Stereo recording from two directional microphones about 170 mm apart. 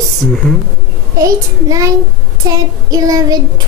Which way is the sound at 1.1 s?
20° right (ahead or behind).